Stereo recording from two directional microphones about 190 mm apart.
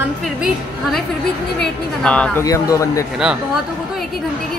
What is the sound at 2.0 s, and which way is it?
Speech, 5° left (ahead or behind).